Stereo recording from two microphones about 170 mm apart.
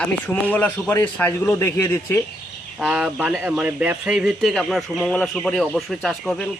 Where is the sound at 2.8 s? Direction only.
Centre (ahead or behind).